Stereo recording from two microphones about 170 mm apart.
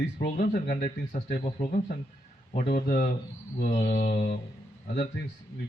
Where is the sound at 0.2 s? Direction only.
60° left (ahead or behind).